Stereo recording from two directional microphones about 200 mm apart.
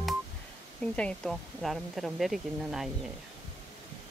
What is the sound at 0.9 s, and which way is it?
Speech, 5° left (ahead or behind).